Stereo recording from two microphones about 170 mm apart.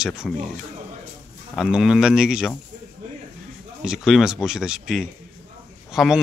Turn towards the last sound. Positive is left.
turn(degrees=0)  # may be behind; listen again after turning